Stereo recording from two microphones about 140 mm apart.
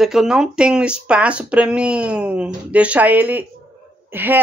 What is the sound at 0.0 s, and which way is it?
Speech, 5° right (ahead or behind).